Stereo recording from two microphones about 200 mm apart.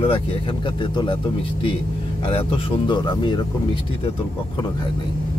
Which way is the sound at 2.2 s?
25° left (ahead or behind).